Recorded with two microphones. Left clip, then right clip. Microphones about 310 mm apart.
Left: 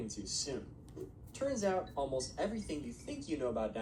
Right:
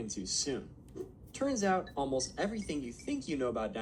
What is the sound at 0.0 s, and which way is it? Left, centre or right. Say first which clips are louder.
A woman's voice: right 4 dB; right.